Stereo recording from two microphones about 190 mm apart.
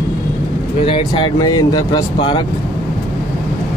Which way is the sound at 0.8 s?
25° left (ahead or behind).